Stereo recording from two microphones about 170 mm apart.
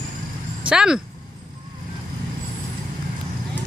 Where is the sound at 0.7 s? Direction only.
5° right (ahead or behind).